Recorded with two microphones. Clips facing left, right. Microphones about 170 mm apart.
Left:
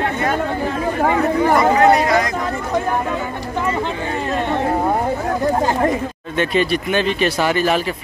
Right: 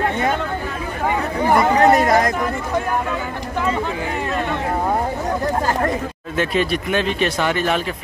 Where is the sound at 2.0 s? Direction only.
45° right (ahead or behind).